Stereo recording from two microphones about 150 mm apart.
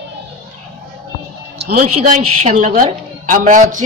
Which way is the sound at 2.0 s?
50° right (ahead or behind).